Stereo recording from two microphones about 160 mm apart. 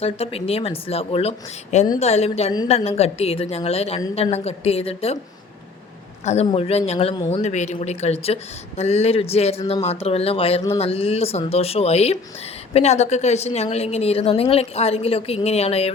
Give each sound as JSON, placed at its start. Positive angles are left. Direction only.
{"t": 0.0, "sound": "a woman's voice", "side_deg": 40}
{"t": 6.2, "sound": "a woman's voice", "side_deg": 40}